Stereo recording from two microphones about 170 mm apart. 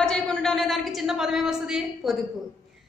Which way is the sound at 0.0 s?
5° left (ahead or behind).